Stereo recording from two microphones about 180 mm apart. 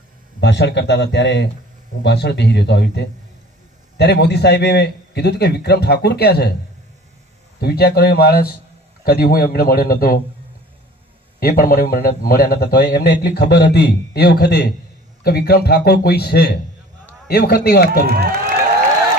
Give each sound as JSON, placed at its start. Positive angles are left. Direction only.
{"t": 0.3, "sound": "a man's voice", "side_deg": 75}
{"t": 7.6, "sound": "a man's voice", "side_deg": 60}
{"t": 11.3, "sound": "a man's voice", "side_deg": 55}
{"t": 18.0, "sound": "speech", "side_deg": -60}